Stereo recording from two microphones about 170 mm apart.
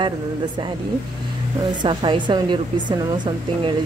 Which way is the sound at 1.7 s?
25° right (ahead or behind).